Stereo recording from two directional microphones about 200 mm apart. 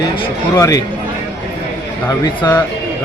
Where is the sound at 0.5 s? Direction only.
15° left (ahead or behind).